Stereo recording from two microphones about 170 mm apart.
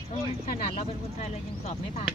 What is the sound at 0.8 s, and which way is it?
Speech, 40° left (ahead or behind).